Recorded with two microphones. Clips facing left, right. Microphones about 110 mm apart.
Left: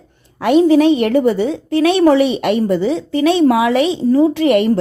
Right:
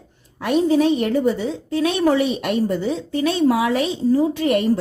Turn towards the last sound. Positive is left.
turn(degrees=90)